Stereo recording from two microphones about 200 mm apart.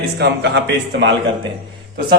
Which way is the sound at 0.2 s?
55° right (ahead or behind).